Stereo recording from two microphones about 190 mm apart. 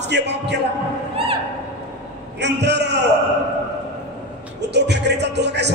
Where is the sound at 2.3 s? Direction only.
65° right (ahead or behind).